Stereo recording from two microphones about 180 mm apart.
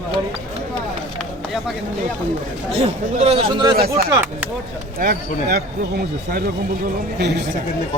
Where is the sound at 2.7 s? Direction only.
35° right (ahead or behind).